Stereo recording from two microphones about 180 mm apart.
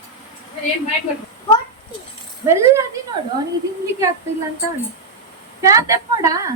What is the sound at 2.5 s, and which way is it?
Speech, 15° right (ahead or behind).